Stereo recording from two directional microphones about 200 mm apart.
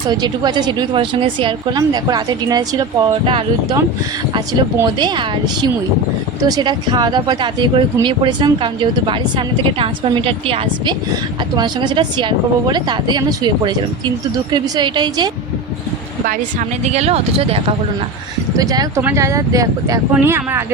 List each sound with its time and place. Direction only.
0.1 s speech: 20° right (ahead or behind)
16.8 s speech: 35° right (ahead or behind)
18.5 s speech: 20° right (ahead or behind)